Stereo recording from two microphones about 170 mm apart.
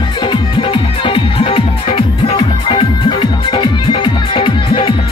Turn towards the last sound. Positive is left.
turn(degrees=30)  # may be behind; listen again after turning